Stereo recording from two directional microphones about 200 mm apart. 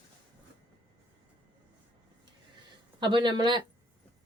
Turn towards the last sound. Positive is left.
turn(degrees=-25)  # may be behind; listen again after turning